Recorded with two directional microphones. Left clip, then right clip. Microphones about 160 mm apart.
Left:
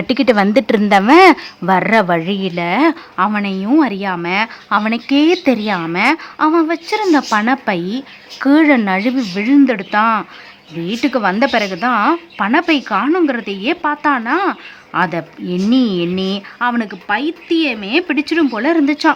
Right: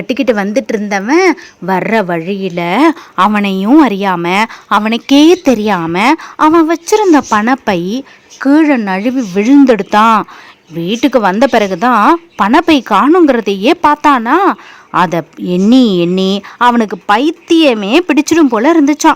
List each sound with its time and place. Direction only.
0.1 s speech: 15° right (ahead or behind)
0.4 s a woman's voice: centre (ahead or behind)
1.7 s speech: 15° right (ahead or behind)
2.6 s a woman's voice: 30° right (ahead or behind)
4.8 s a woman's voice: 35° right (ahead or behind)
9.3 s a woman's voice: 35° right (ahead or behind)